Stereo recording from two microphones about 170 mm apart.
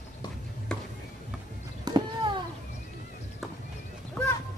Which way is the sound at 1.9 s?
25° right (ahead or behind).